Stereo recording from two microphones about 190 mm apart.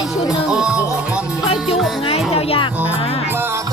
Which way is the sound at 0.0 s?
5° right (ahead or behind).